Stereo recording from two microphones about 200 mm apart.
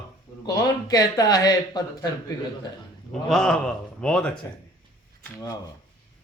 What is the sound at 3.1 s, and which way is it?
A man's voice, centre (ahead or behind).